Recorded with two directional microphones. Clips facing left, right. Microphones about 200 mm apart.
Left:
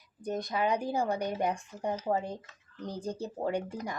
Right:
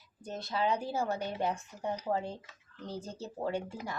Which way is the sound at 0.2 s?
15° left (ahead or behind).